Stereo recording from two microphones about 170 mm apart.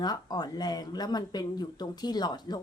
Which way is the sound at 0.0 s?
25° left (ahead or behind).